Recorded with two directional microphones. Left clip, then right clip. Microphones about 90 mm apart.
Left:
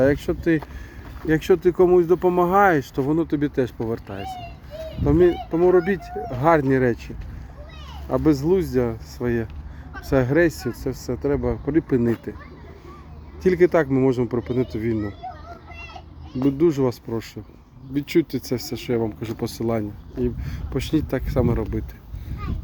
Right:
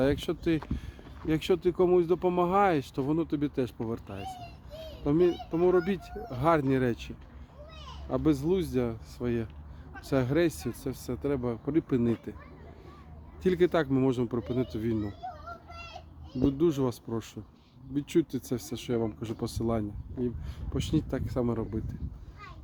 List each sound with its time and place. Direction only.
0.0 s speech: 40° right (ahead or behind)
1.3 s speech: 25° right (ahead or behind)
5.5 s speech: 40° right (ahead or behind)
8.1 s speech: 20° right (ahead or behind)
13.4 s speech: 30° right (ahead or behind)
16.6 s speech: 35° right (ahead or behind)
20.2 s speech: 25° right (ahead or behind)